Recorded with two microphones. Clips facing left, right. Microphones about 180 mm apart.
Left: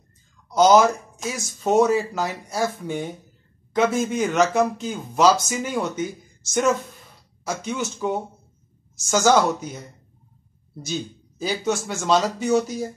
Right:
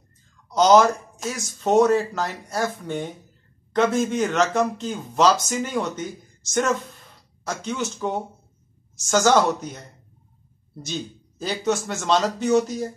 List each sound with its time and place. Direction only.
0.5 s speech: 5° left (ahead or behind)
7.4 s speech: 5° left (ahead or behind)
10.9 s speech: 5° left (ahead or behind)